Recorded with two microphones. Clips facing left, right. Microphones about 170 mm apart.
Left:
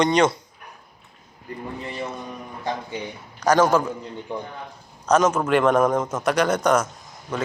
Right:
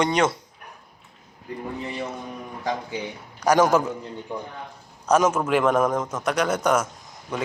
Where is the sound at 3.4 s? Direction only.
15° right (ahead or behind).